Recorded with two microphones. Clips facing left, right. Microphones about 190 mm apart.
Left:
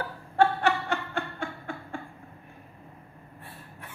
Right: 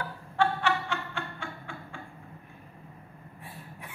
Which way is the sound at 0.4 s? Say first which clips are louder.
Left 4 dB; 45° left (ahead or behind).